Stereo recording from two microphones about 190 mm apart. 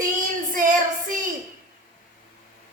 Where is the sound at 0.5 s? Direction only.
45° right (ahead or behind).